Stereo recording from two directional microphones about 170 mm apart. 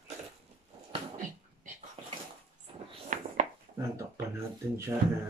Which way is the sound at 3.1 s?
50° right (ahead or behind).